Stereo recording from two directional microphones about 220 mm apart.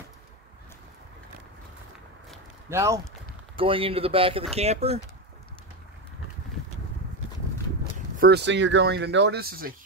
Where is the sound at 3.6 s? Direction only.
25° right (ahead or behind).